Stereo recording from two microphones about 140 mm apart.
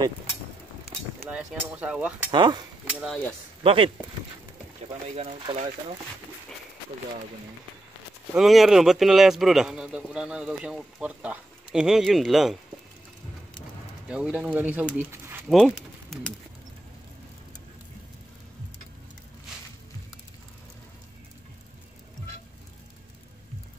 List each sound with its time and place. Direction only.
1.3 s speech: 10° right (ahead or behind)
2.3 s speech: 30° right (ahead or behind)
2.9 s speech: 5° right (ahead or behind)
3.6 s speech: 40° right (ahead or behind)
5.1 s speech: 50° right (ahead or behind)
8.4 s a man's voice: centre (ahead or behind)
14.0 s speech: 5° right (ahead or behind)
15.0 s a sound: 15° right (ahead or behind)
15.4 s speech: centre (ahead or behind)